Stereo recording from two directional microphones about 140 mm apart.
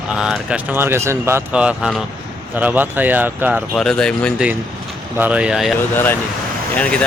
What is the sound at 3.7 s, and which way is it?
Speech, 5° left (ahead or behind).